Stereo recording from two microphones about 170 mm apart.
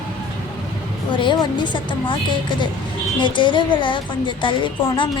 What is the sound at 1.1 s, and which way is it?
A woman's voice, 25° left (ahead or behind).